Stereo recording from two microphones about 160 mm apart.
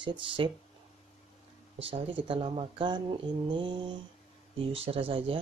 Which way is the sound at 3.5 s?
30° right (ahead or behind).